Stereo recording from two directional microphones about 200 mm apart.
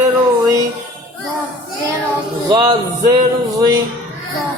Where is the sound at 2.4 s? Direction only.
20° right (ahead or behind).